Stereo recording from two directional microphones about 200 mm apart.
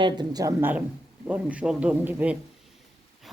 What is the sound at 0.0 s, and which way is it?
A man's voice, 20° right (ahead or behind).